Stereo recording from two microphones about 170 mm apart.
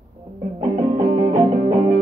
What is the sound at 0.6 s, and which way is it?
Music, 25° right (ahead or behind).